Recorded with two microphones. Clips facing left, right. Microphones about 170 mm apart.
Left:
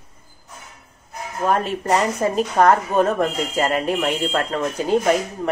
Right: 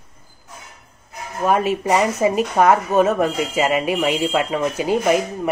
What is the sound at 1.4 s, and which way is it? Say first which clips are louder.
Speech: right 3 dB; 10° right (ahead or behind).